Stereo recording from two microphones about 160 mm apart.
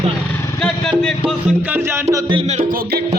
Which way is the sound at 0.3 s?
20° left (ahead or behind).